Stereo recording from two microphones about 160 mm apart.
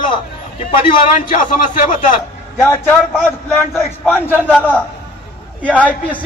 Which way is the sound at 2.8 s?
5° right (ahead or behind).